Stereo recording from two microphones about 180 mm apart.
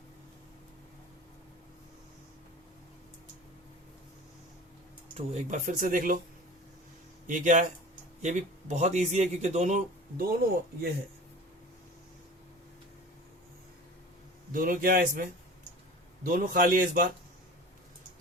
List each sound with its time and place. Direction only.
5.3 s speech: 40° right (ahead or behind)
7.3 s a man's voice: 45° right (ahead or behind)
14.5 s speech: 50° right (ahead or behind)
16.2 s speech: 50° right (ahead or behind)